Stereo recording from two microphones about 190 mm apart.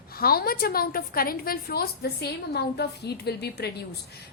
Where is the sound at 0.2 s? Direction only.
50° left (ahead or behind).